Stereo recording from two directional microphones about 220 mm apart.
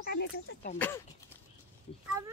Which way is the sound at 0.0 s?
50° left (ahead or behind).